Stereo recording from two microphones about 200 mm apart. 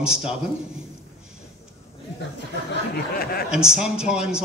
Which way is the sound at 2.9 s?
50° left (ahead or behind).